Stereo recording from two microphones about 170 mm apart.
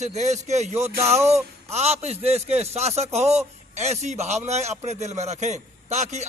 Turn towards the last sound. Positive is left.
turn(degrees=-40)  # may be behind; listen again after turning